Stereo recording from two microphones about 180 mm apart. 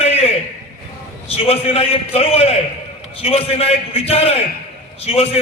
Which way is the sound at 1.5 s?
35° left (ahead or behind).